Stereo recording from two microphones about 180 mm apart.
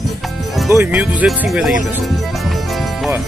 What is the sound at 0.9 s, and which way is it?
Speech, 5° right (ahead or behind).